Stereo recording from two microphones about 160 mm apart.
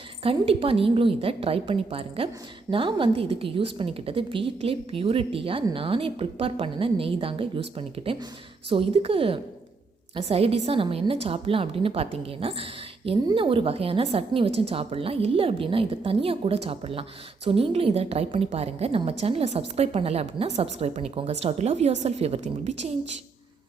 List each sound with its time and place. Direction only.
0.2 s a woman's voice: 35° right (ahead or behind)